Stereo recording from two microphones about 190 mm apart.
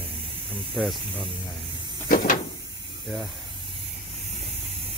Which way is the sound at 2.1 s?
50° left (ahead or behind).